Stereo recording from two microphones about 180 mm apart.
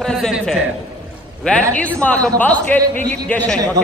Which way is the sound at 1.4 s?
5° left (ahead or behind).